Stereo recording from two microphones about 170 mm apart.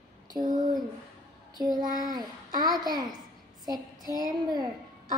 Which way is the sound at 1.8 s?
25° right (ahead or behind).